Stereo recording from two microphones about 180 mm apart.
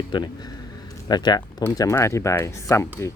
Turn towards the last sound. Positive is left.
turn(degrees=15)  # may be behind; listen again after turning